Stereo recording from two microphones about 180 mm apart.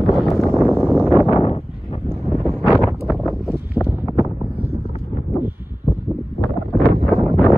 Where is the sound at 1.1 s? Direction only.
35° left (ahead or behind).